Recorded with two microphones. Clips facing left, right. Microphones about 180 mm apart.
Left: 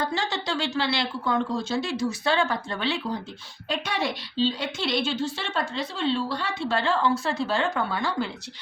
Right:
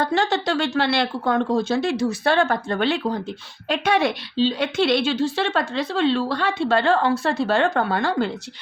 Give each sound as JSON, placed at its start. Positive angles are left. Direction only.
{"t": 0.0, "sound": "a woman's voice", "side_deg": -60}